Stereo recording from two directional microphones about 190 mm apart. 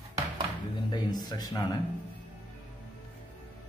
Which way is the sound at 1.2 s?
20° left (ahead or behind).